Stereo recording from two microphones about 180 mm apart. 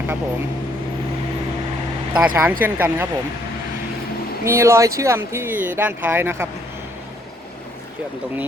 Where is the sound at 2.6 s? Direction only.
10° right (ahead or behind).